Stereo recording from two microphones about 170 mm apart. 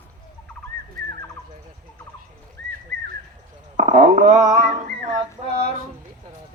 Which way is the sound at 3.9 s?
45° right (ahead or behind).